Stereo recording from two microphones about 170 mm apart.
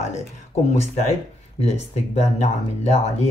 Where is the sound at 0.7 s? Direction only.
40° left (ahead or behind).